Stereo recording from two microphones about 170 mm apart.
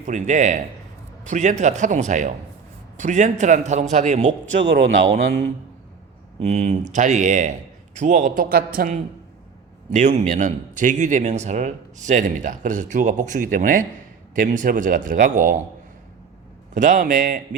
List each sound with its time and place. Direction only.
0.0 s a man's voice: 45° right (ahead or behind)
5.1 s speech: 70° right (ahead or behind)
6.4 s a man's voice: 45° right (ahead or behind)
9.9 s a man's voice: 45° right (ahead or behind)
16.7 s a man's voice: 50° right (ahead or behind)